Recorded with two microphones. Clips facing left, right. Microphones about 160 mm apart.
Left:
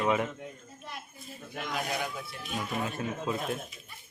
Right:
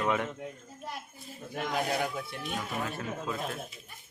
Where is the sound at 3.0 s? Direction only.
20° left (ahead or behind).